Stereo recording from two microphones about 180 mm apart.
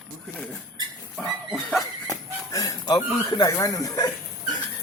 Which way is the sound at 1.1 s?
Centre (ahead or behind).